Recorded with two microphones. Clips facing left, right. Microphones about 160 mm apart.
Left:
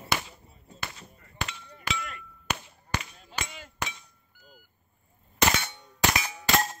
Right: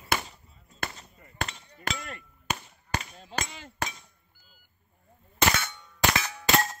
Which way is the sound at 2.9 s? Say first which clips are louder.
Right 2 dB; 40° right (ahead or behind).